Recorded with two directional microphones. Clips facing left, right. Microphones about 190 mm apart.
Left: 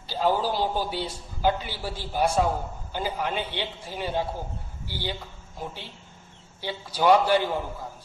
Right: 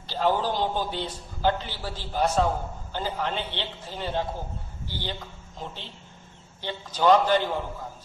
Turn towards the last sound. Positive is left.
turn(degrees=10)  # may be behind; listen again after turning